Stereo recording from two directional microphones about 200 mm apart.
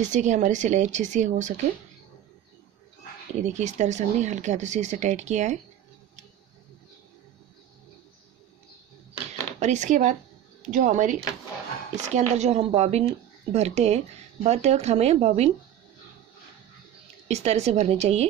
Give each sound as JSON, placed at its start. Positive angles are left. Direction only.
{"t": 0.0, "sound": "a woman's voice", "side_deg": -35}
{"t": 3.3, "sound": "a woman's voice", "side_deg": -35}
{"t": 9.6, "sound": "a woman's voice", "side_deg": -35}
{"t": 17.3, "sound": "a woman's voice", "side_deg": -35}